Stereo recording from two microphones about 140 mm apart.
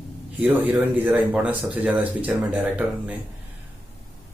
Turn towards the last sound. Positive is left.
turn(degrees=-10)  # may be behind; listen again after turning